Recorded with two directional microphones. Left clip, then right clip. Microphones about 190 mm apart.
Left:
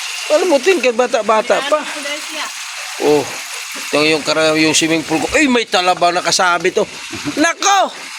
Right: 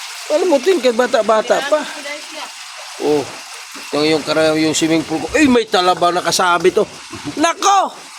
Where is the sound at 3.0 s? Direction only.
5° left (ahead or behind).